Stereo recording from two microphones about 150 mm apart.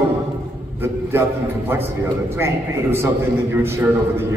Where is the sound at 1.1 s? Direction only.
15° right (ahead or behind).